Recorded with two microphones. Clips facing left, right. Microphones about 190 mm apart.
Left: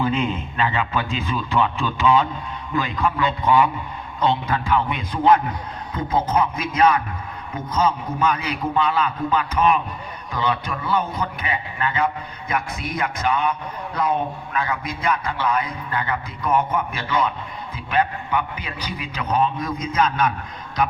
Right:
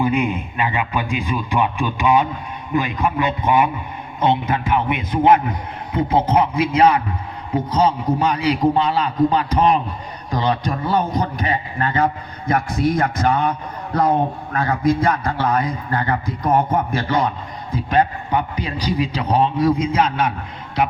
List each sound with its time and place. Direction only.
0.0 s a man's voice: 10° right (ahead or behind); by 13.4 s 50° right (ahead or behind)
14.5 s a man's voice: 35° right (ahead or behind)
15.2 s a man's voice: 50° right (ahead or behind); by 20.3 s 30° right (ahead or behind)